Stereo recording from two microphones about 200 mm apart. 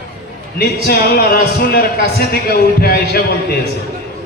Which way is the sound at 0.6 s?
50° left (ahead or behind).